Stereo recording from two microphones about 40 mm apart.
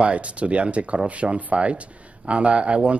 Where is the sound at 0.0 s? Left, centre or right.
Right.